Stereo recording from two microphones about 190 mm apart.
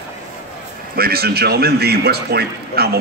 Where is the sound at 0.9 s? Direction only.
55° right (ahead or behind).